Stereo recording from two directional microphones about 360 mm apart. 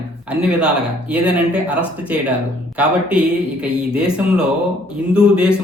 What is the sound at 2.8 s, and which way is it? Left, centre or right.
Speech, centre.